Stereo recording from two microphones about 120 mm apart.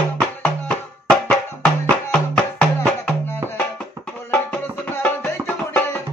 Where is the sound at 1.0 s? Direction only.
10° left (ahead or behind).